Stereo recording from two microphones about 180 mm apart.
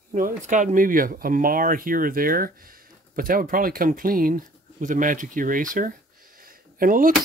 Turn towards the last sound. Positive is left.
turn(degrees=-50)  # may be behind; listen again after turning